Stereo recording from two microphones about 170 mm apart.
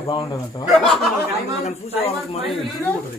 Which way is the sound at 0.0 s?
25° left (ahead or behind).